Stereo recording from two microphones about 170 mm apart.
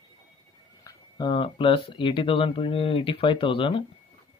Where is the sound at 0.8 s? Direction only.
25° left (ahead or behind).